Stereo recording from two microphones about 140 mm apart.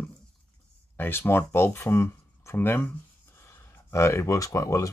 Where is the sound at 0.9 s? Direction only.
15° left (ahead or behind).